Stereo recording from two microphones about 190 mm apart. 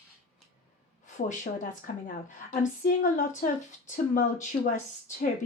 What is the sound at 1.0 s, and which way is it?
A woman's voice, 40° left (ahead or behind).